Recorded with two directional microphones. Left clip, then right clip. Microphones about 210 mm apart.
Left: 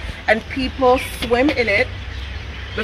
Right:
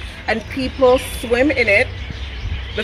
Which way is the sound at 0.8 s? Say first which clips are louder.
Right 2 dB; 30° left (ahead or behind).